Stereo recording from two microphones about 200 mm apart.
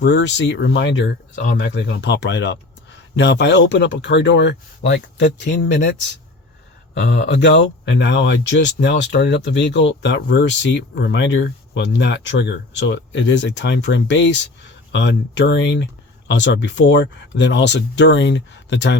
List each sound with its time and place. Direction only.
0.0 s speech: 60° left (ahead or behind)